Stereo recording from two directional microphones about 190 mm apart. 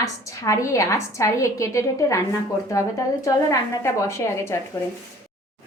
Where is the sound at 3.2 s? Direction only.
15° left (ahead or behind).